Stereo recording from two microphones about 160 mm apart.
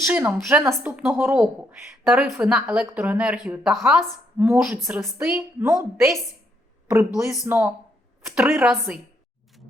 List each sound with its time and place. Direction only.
0.0 s speech: 15° right (ahead or behind)
0.3 s speech: centre (ahead or behind)
0.6 s speech: 15° right (ahead or behind)